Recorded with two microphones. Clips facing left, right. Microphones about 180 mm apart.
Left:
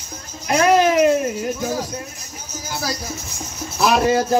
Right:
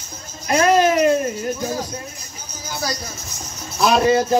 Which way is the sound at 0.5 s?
5° left (ahead or behind).